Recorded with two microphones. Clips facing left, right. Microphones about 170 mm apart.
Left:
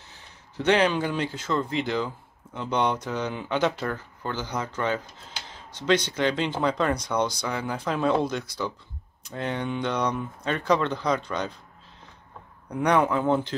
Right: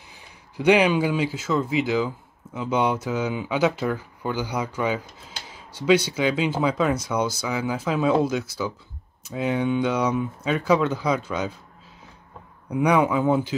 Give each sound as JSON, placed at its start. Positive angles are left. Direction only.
{"t": 0.1, "sound": "speech", "side_deg": -10}
{"t": 12.6, "sound": "speech", "side_deg": -10}